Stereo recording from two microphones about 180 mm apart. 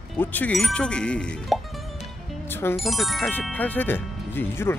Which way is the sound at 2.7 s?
Centre (ahead or behind).